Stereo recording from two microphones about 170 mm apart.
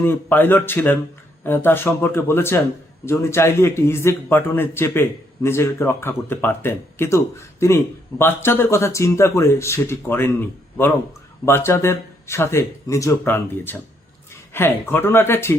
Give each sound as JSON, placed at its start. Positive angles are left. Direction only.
{"t": 0.0, "sound": "a man's voice", "side_deg": 10}
{"t": 11.4, "sound": "a man's voice", "side_deg": 15}